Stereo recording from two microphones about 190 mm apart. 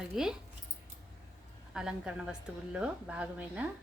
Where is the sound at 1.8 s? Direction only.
5° right (ahead or behind).